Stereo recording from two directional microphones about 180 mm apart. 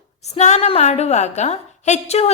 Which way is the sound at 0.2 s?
40° left (ahead or behind).